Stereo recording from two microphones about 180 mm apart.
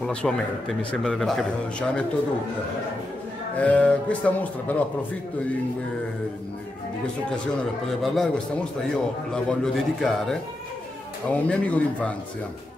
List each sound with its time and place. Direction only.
0.0 s a man's voice: 5° left (ahead or behind)
3.5 s speech: 10° left (ahead or behind)
8.0 s a man's voice: centre (ahead or behind)